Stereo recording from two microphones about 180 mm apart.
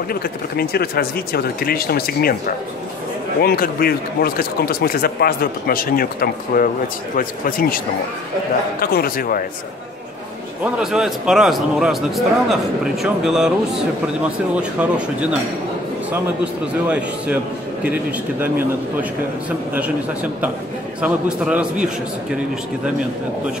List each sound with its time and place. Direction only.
0.1 s a man's voice: 60° left (ahead or behind)
10.6 s a man's voice: 5° right (ahead or behind)
16.8 s a man's voice: 5° right (ahead or behind)
18.4 s a man's voice: 10° right (ahead or behind)
21.0 s a man's voice: 5° right (ahead or behind)